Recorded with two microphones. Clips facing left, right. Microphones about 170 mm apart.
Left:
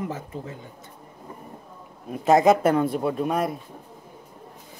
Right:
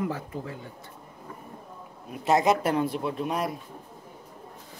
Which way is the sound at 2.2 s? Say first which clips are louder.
Left 5 dB; 50° left (ahead or behind).